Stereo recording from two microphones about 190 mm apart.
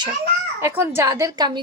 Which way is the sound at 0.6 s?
15° right (ahead or behind).